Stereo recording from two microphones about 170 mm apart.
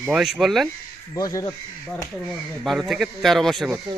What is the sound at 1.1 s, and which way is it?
Speech, 20° left (ahead or behind).